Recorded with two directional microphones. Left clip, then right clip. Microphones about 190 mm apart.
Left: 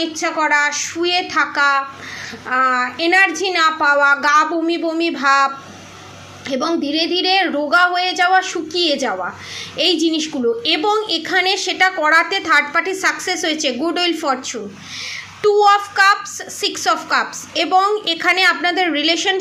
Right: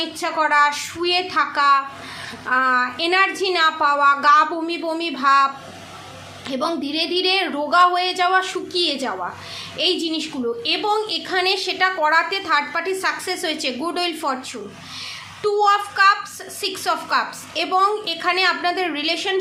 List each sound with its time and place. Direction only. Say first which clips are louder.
0.0 s a woman's voice: left 3 dB; 10° left (ahead or behind)
6.5 s a woman's voice: left 4 dB; 10° left (ahead or behind)